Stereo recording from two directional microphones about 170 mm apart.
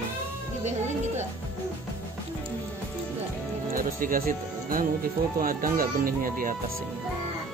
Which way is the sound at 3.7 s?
55° right (ahead or behind).